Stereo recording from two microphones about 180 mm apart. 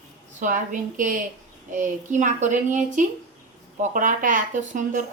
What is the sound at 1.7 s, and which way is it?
A woman's voice, 45° right (ahead or behind).